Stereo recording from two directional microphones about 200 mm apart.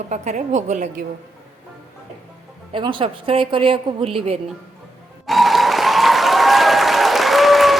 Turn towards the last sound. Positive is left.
turn(degrees=0)  # may be behind; listen again after turning